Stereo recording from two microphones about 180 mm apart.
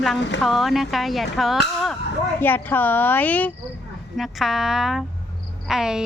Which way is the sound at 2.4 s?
10° left (ahead or behind).